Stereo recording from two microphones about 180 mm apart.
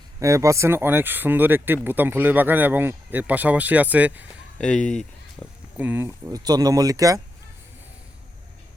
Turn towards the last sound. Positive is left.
turn(degrees=-20)  # may be behind; listen again after turning